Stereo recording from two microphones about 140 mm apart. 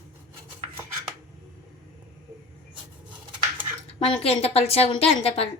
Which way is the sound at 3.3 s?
35° right (ahead or behind).